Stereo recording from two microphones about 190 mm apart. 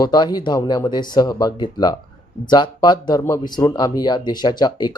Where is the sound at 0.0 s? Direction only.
20° left (ahead or behind).